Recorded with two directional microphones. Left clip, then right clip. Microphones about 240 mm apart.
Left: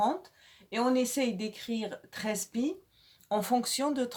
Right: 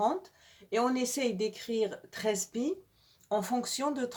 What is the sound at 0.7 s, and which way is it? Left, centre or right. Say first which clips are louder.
Speech: left 1 dB; left.